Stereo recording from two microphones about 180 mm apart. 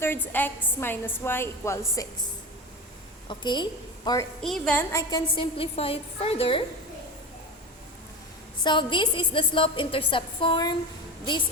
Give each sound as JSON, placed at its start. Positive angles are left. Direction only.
{"t": 0.0, "sound": "a woman's voice", "side_deg": 10}
{"t": 3.2, "sound": "a woman's voice", "side_deg": 25}
{"t": 4.4, "sound": "a woman's voice", "side_deg": 5}
{"t": 8.6, "sound": "a woman's voice", "side_deg": 25}